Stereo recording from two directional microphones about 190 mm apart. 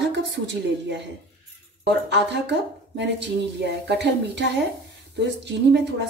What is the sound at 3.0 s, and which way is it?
A woman's voice, 65° right (ahead or behind).